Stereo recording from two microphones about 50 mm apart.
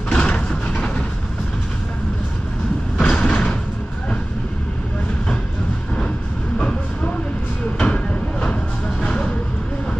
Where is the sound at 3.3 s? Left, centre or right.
Left.